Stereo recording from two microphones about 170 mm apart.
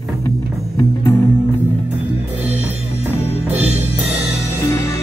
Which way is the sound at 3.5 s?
40° right (ahead or behind).